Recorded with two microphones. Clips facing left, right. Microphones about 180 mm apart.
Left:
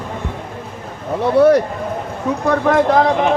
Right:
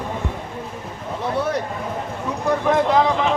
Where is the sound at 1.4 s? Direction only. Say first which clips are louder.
Left 14 dB; 70° left (ahead or behind).